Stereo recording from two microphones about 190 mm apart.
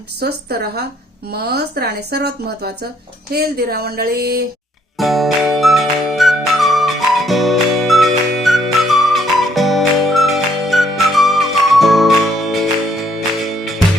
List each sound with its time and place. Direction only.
0.2 s speech: 60° right (ahead or behind)
4.9 s music: centre (ahead or behind)